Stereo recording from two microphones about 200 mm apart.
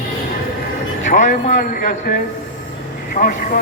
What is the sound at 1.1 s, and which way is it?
A man's voice, 40° left (ahead or behind).